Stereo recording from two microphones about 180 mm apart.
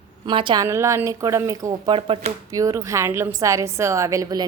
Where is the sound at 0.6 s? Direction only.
15° right (ahead or behind).